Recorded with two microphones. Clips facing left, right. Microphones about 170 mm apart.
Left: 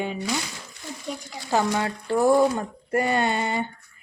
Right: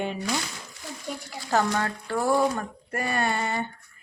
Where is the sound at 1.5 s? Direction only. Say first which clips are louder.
Left 1 dB; 15° left (ahead or behind).